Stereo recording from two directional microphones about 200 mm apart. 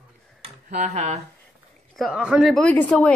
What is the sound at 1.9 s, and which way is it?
Speech, centre (ahead or behind).